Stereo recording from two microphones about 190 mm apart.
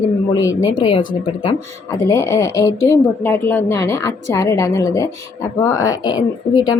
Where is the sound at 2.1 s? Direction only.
15° left (ahead or behind).